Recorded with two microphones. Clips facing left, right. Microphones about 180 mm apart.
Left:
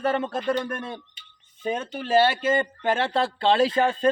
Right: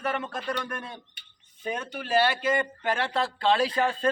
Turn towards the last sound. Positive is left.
turn(degrees=25)  # may be behind; listen again after turning